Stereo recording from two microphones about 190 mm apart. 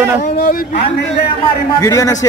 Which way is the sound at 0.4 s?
50° left (ahead or behind).